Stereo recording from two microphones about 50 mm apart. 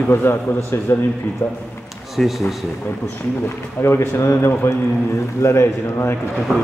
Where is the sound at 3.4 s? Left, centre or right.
Left.